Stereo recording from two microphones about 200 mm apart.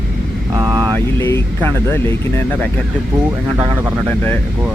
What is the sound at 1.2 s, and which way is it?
Speech, 15° left (ahead or behind).